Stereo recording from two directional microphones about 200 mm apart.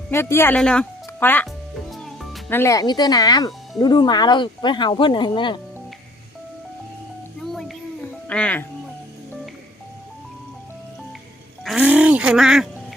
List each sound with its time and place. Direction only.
0.1 s speech: 10° left (ahead or behind)
1.9 s music: centre (ahead or behind)
2.5 s speech: 15° left (ahead or behind)
7.4 s a sound: centre (ahead or behind)
8.3 s speech: 5° left (ahead or behind)
11.6 s speech: 5° right (ahead or behind)